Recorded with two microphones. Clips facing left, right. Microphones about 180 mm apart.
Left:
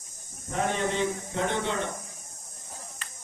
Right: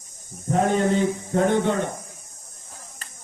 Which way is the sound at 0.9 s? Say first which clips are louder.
Right 7 dB; 50° right (ahead or behind).